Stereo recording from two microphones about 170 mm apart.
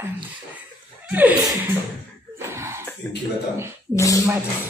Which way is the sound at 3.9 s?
20° left (ahead or behind).